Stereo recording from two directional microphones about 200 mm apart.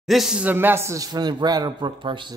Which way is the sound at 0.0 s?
Centre (ahead or behind).